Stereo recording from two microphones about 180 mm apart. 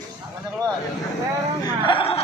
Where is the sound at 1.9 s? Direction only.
30° left (ahead or behind).